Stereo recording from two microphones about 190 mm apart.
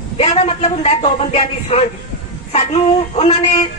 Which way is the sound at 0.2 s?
35° left (ahead or behind).